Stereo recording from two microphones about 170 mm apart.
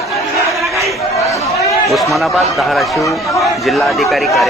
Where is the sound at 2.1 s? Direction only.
Centre (ahead or behind).